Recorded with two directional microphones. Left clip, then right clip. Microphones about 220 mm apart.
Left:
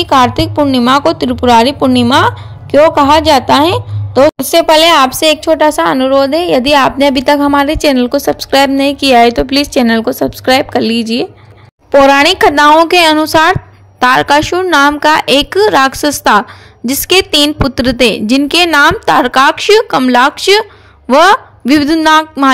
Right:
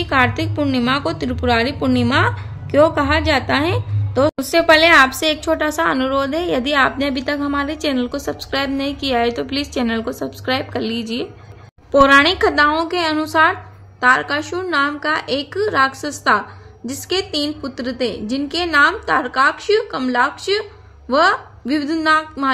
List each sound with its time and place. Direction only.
0.0 s a woman's voice: 30° left (ahead or behind)